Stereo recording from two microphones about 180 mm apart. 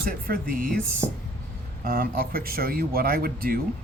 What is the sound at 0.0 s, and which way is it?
Speech, 55° right (ahead or behind).